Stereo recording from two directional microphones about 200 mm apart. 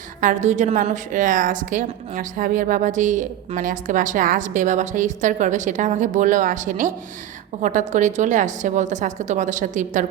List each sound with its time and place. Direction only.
0.2 s a woman's voice: 40° right (ahead or behind)